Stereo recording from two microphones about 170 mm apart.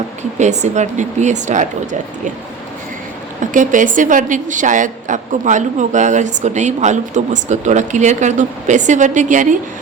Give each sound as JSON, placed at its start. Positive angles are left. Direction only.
{"t": 0.2, "sound": "a woman's voice", "side_deg": -45}
{"t": 3.4, "sound": "a woman's voice", "side_deg": -50}